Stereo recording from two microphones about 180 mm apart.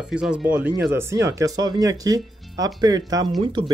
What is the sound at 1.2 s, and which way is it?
Speech, 20° right (ahead or behind).